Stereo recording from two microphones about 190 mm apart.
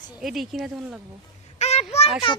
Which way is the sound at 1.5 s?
35° left (ahead or behind).